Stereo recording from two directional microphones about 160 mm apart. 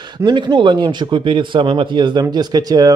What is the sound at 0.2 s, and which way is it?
Speech, 30° right (ahead or behind).